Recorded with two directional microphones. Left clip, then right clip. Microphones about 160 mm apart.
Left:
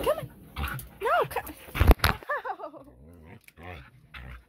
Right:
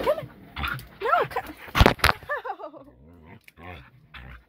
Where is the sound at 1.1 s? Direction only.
5° right (ahead or behind).